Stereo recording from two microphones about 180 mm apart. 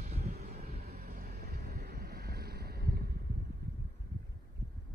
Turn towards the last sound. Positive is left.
turn(degrees=-60)  # may be behind; listen again after turning